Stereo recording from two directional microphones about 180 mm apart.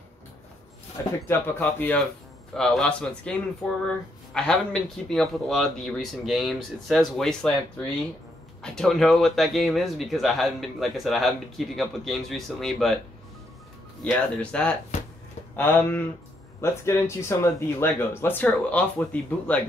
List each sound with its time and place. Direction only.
1.0 s speech: 15° left (ahead or behind)
8.6 s speech: centre (ahead or behind)
14.0 s speech: 5° left (ahead or behind)